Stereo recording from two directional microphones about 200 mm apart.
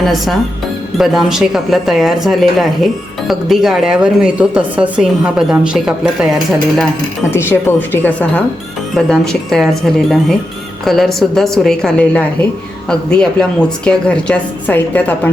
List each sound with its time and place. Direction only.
0.0 s speech: centre (ahead or behind)
7.3 s speech: 10° left (ahead or behind)